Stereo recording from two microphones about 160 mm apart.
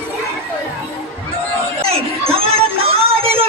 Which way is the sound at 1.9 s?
40° right (ahead or behind).